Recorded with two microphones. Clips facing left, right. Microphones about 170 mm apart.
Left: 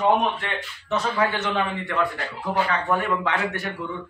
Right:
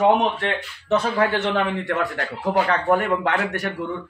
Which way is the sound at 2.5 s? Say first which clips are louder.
Right 4 dB; 55° right (ahead or behind).